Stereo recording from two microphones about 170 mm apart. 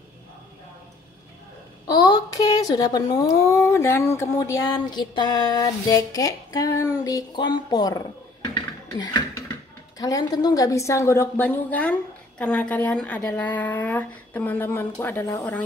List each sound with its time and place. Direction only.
1.9 s speech: 25° left (ahead or behind)